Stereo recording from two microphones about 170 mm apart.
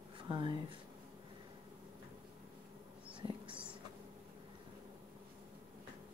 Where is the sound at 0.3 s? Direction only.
25° right (ahead or behind).